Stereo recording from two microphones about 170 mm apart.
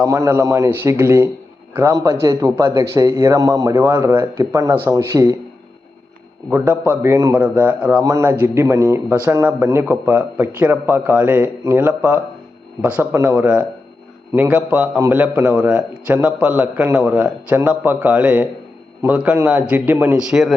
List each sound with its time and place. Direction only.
0.0 s a man's voice: 15° right (ahead or behind)
6.5 s a man's voice: 15° right (ahead or behind)